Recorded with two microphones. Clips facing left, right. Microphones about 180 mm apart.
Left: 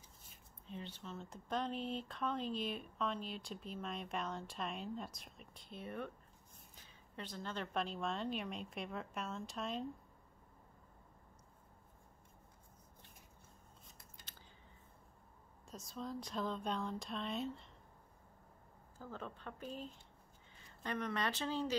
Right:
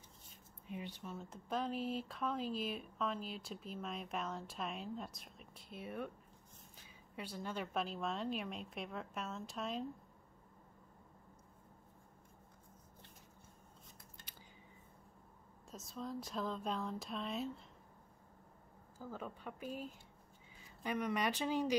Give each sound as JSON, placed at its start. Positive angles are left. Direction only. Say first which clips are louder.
{"t": 0.7, "sound": "speech", "louder": "right 2 dB", "side_deg": -15}
{"t": 7.2, "sound": "speech", "louder": "right 1 dB", "side_deg": -10}
{"t": 15.7, "sound": "speech", "louder": "even", "side_deg": 0}
{"t": 18.9, "sound": "speech", "louder": "right 1 dB", "side_deg": -10}